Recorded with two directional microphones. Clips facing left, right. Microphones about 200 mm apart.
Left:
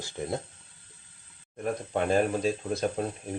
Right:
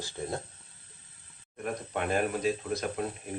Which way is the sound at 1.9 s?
30° left (ahead or behind).